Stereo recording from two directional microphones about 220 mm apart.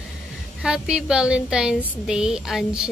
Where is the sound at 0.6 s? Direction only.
5° right (ahead or behind).